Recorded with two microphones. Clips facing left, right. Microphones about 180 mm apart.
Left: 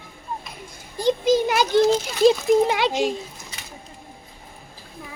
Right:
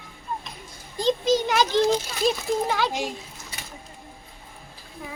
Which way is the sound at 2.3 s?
20° left (ahead or behind).